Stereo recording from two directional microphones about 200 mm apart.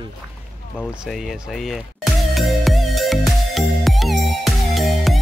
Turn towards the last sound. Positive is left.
turn(degrees=0)  # may be behind; listen again after turning